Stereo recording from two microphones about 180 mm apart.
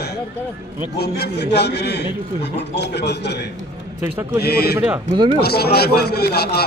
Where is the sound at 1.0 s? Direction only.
65° left (ahead or behind).